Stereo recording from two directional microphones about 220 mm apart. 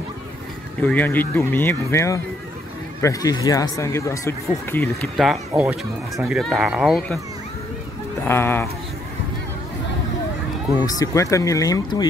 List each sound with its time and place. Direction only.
0.8 s speech: 10° left (ahead or behind)
8.3 s speech: 10° left (ahead or behind)
10.8 s speech: 15° left (ahead or behind)